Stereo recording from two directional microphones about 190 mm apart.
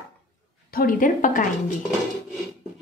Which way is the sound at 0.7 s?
45° left (ahead or behind).